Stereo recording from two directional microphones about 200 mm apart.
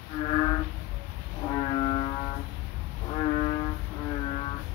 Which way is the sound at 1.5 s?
20° left (ahead or behind).